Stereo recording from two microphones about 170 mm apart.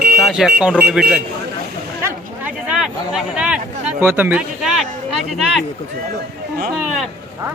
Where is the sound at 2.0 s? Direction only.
10° right (ahead or behind).